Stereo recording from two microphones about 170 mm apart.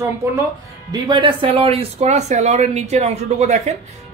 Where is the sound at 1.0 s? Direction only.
30° right (ahead or behind).